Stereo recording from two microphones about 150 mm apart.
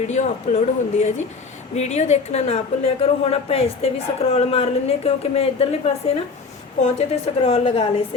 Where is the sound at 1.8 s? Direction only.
50° left (ahead or behind).